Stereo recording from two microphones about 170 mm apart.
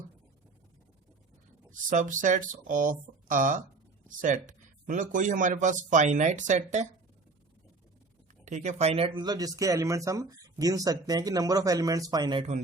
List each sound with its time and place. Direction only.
1.7 s speech: 50° right (ahead or behind)
8.4 s speech: 45° right (ahead or behind); by 12.5 s 25° right (ahead or behind)